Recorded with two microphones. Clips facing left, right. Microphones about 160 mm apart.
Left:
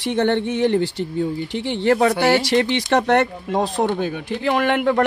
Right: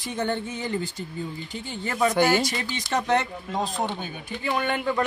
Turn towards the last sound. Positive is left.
turn(degrees=65)  # may be behind; listen again after turning